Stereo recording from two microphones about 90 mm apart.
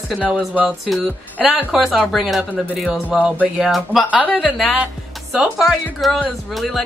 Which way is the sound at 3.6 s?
Centre (ahead or behind).